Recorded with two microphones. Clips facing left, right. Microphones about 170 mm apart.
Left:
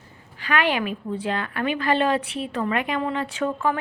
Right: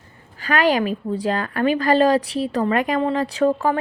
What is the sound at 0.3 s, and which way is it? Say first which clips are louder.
A woman's voice: right 5 dB; 40° right (ahead or behind).